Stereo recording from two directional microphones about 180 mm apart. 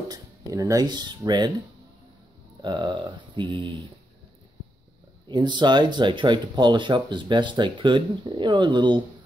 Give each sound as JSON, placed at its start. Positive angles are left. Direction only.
{"t": 0.1, "sound": "speech", "side_deg": -20}
{"t": 2.6, "sound": "speech", "side_deg": -25}
{"t": 5.3, "sound": "speech", "side_deg": -25}